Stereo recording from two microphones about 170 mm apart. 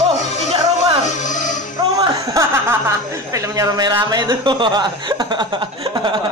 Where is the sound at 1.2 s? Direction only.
45° left (ahead or behind).